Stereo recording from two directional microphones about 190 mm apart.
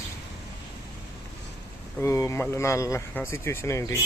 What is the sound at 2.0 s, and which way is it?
Speech, 15° left (ahead or behind).